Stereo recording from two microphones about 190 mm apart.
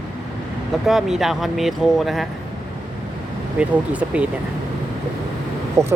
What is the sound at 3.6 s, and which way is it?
Speech, 5° right (ahead or behind).